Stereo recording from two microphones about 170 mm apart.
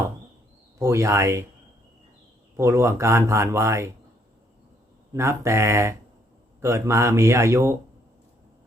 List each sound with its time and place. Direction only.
0.8 s speech: 15° right (ahead or behind)
2.6 s speech: 15° right (ahead or behind)
5.1 s speech: 15° right (ahead or behind)